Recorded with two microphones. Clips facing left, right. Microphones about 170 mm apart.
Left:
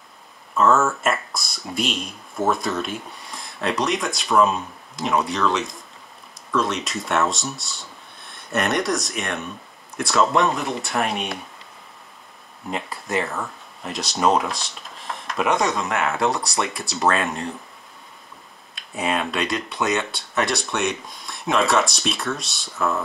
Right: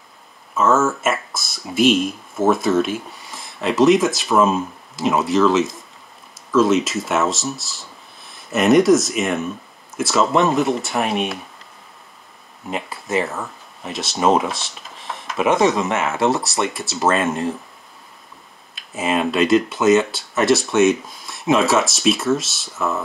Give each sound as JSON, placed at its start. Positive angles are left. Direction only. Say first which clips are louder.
{"t": 0.6, "sound": "speech", "louder": "right 1 dB", "side_deg": 0}
{"t": 12.6, "sound": "speech", "louder": "right 2 dB", "side_deg": 0}
{"t": 18.8, "sound": "speech", "louder": "right 4 dB", "side_deg": 0}